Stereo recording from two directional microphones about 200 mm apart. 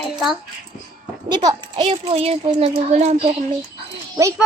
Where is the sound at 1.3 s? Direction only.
20° right (ahead or behind).